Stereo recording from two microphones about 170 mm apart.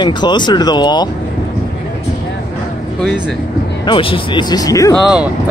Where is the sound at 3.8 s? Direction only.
30° left (ahead or behind).